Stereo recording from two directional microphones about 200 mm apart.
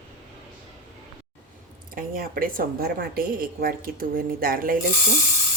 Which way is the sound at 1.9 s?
45° right (ahead or behind).